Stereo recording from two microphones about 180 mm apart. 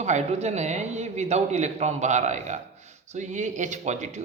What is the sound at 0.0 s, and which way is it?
Speech, 40° right (ahead or behind).